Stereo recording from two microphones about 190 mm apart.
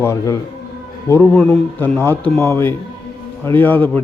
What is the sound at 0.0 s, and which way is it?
A man's voice, 15° left (ahead or behind).